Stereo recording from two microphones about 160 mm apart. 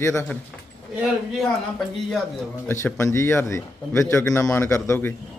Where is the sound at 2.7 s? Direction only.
15° left (ahead or behind).